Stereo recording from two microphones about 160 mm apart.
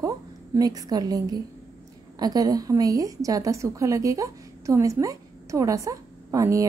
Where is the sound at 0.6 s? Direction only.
25° right (ahead or behind).